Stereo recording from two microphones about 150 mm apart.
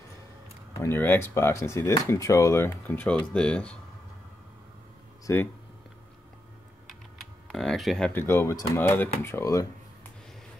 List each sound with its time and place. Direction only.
0.7 s speech: 15° left (ahead or behind)
5.2 s speech: 15° left (ahead or behind)
6.9 s typing: centre (ahead or behind)
8.1 s speech: 15° left (ahead or behind)